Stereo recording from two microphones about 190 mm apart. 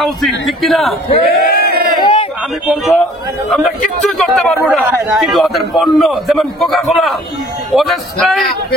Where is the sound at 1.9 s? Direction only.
25° left (ahead or behind).